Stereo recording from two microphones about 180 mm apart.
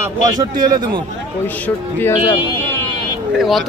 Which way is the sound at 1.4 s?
10° left (ahead or behind).